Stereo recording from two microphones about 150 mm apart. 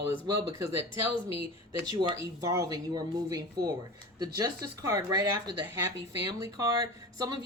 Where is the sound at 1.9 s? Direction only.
20° right (ahead or behind).